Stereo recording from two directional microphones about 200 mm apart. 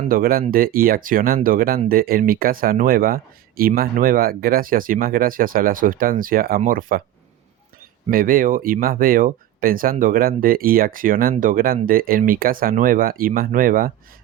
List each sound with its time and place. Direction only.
0.0 s speech: 45° right (ahead or behind)
8.1 s speech: 45° right (ahead or behind)